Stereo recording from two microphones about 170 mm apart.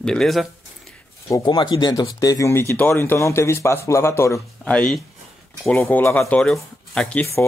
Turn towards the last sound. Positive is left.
turn(degrees=10)  # may be behind; listen again after turning